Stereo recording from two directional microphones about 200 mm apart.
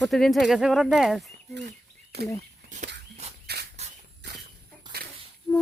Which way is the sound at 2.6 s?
50° right (ahead or behind).